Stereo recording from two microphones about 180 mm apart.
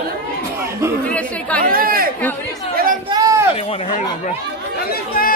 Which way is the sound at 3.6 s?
35° left (ahead or behind).